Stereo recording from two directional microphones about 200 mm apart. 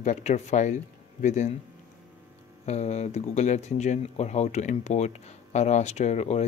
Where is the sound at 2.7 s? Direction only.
35° left (ahead or behind).